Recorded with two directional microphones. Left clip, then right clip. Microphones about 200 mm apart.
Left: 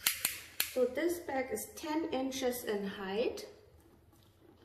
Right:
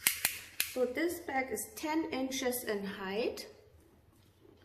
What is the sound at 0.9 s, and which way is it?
A woman's voice, 30° right (ahead or behind).